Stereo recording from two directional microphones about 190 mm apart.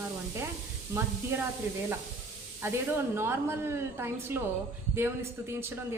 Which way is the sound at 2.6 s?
10° right (ahead or behind).